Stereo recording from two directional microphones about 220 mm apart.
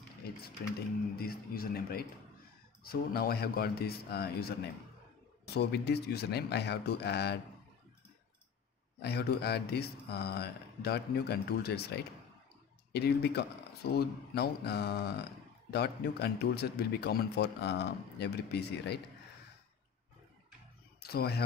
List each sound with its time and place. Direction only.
0.4 s a man's voice: 45° left (ahead or behind)
9.0 s a man's voice: 45° left (ahead or behind)
21.0 s speech: 45° left (ahead or behind)